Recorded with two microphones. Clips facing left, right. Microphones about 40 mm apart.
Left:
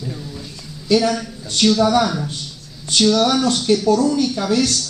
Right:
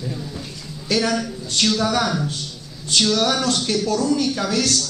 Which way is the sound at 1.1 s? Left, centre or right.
Centre.